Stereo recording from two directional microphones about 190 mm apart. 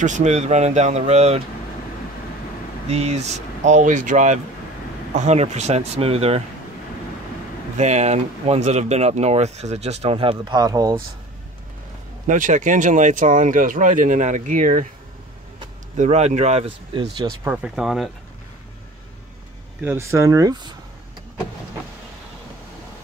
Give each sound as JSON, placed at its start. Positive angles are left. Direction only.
{"t": 0.0, "sound": "speech", "side_deg": -40}
{"t": 2.9, "sound": "speech", "side_deg": -35}
{"t": 7.7, "sound": "speech", "side_deg": -40}
{"t": 12.3, "sound": "speech", "side_deg": -40}
{"t": 16.0, "sound": "speech", "side_deg": -35}
{"t": 17.4, "sound": "speech", "side_deg": -10}
{"t": 19.8, "sound": "speech", "side_deg": -10}